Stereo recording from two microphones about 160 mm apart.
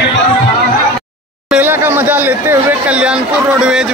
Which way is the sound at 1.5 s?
10° right (ahead or behind).